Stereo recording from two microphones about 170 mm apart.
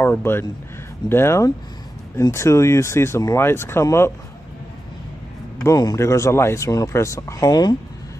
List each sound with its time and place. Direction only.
0.0 s speech: 15° left (ahead or behind)
5.6 s speech: 20° left (ahead or behind)